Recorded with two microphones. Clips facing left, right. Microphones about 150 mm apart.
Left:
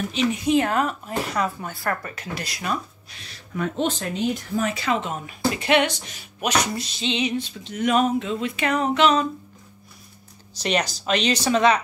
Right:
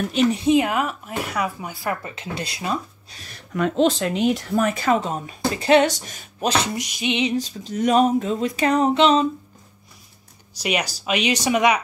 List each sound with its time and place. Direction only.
0.1 s speech: 45° right (ahead or behind)
0.4 s speech: 20° right (ahead or behind)
0.7 s speech: 5° right (ahead or behind); by 3.2 s 25° right (ahead or behind)
3.2 s speech: 50° right (ahead or behind)
3.5 s speech: 90° right
4.6 s a sound: 45° right (ahead or behind)
6.4 s a sound: 30° right (ahead or behind)
6.7 s speech: 15° right (ahead or behind)
7.2 s a sound: 40° right (ahead or behind)
10.5 s speech: 10° right (ahead or behind)